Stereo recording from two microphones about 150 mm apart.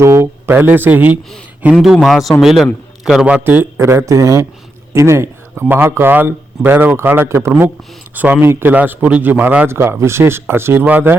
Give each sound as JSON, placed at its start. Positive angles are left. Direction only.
{"t": 0.0, "sound": "speech", "side_deg": -20}
{"t": 1.7, "sound": "a man's voice", "side_deg": 0}